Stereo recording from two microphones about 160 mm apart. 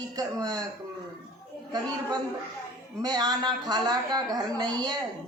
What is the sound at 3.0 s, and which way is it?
A man's voice, 25° right (ahead or behind).